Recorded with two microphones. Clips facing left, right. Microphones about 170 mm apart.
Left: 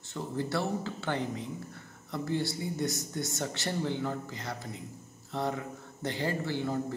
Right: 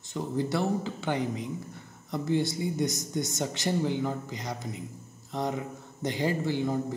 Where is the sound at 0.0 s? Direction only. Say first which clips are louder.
Right 4 dB; 15° right (ahead or behind).